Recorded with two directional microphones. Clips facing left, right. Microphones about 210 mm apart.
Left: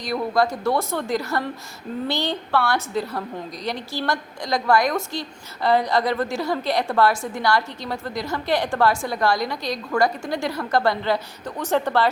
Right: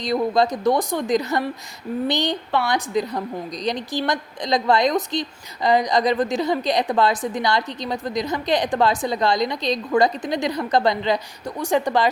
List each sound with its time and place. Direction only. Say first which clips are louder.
0.0 s a woman's voice: right 2 dB; 20° right (ahead or behind)